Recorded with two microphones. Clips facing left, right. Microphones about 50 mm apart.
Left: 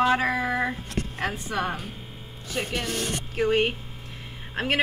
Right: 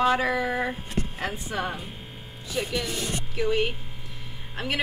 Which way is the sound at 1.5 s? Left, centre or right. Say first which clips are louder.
Left 2 dB; left.